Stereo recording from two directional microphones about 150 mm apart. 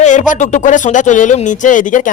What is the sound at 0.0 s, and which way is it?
Speech, 55° left (ahead or behind).